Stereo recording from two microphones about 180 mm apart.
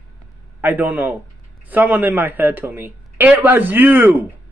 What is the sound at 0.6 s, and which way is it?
Speech, 10° right (ahead or behind).